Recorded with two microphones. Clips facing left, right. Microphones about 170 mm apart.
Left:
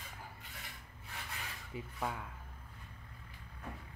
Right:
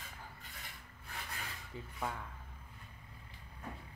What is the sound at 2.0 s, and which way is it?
Speech, 10° left (ahead or behind).